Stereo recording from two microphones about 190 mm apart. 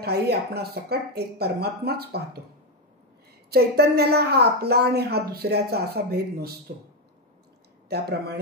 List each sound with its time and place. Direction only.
0.0 s a woman's voice: 55° right (ahead or behind)
3.5 s a woman's voice: 55° right (ahead or behind)
7.9 s a woman's voice: 55° right (ahead or behind)